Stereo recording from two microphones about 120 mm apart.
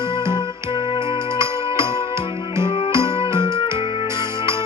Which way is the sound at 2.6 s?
50° left (ahead or behind).